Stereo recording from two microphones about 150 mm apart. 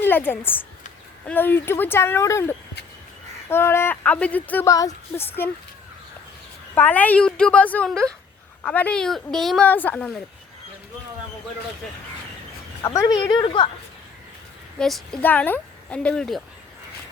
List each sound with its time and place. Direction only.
0.0 s a woman's voice: 15° left (ahead or behind)
6.7 s a woman's voice: 10° left (ahead or behind)
12.8 s a woman's voice: 20° left (ahead or behind)
14.8 s a woman's voice: 5° left (ahead or behind)